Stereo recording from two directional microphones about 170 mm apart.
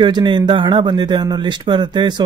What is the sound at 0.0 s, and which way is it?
Speech, 25° right (ahead or behind).